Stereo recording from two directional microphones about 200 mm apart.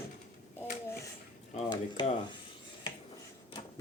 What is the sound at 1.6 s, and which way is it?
Speech, 25° left (ahead or behind).